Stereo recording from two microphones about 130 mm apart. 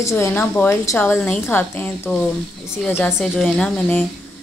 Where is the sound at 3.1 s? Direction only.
Centre (ahead or behind).